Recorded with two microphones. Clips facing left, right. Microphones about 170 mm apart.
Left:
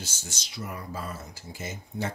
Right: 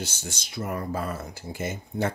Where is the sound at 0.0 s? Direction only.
60° right (ahead or behind).